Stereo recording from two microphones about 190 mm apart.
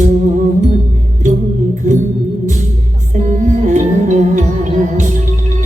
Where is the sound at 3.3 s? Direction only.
40° right (ahead or behind).